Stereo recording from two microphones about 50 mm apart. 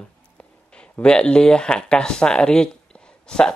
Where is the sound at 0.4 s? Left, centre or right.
Left.